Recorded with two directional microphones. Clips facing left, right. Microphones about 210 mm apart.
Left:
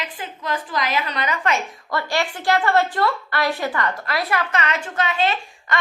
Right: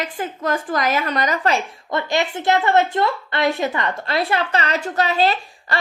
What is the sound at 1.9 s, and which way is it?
A woman's voice, 20° right (ahead or behind).